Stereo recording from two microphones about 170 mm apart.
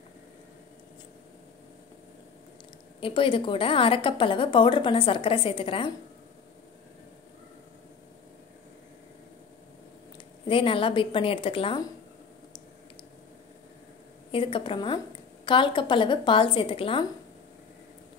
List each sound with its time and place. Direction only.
3.0 s a woman's voice: 30° left (ahead or behind)
10.5 s a woman's voice: 30° left (ahead or behind)
14.3 s a woman's voice: 30° left (ahead or behind)